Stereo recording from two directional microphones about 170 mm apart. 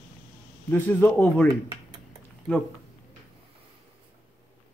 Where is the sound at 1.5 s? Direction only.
25° right (ahead or behind).